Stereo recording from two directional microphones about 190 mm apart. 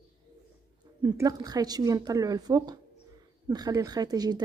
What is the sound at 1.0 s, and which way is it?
A woman's voice, 20° right (ahead or behind).